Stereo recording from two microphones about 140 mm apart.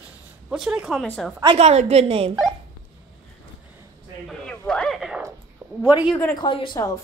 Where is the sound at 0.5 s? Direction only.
5° right (ahead or behind).